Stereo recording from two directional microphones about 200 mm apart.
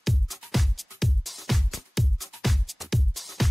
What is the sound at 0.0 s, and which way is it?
Music, centre (ahead or behind).